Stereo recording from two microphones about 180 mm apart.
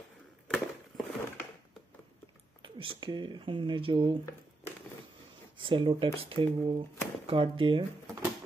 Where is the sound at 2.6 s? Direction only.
30° right (ahead or behind).